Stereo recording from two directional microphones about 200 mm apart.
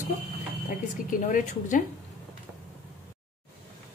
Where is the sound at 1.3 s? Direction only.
40° left (ahead or behind).